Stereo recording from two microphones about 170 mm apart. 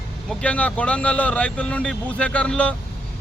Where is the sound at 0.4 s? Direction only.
10° left (ahead or behind).